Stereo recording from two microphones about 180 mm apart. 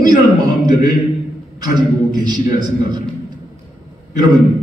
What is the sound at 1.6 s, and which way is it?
Speech, 25° right (ahead or behind).